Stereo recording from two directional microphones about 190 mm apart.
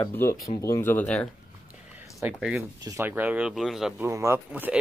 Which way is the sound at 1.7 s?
5° right (ahead or behind).